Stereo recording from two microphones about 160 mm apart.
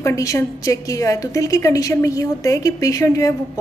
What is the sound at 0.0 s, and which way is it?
A woman's voice, 20° left (ahead or behind).